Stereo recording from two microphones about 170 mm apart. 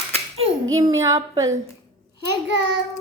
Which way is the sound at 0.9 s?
20° right (ahead or behind).